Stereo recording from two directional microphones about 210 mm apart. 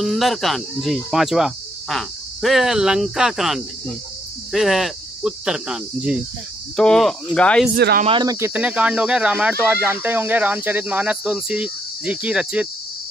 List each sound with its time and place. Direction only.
0.0 s speech: centre (ahead or behind)
7.7 s speech: 45° right (ahead or behind)
8.0 s speech: 25° right (ahead or behind); by 12.6 s 5° right (ahead or behind)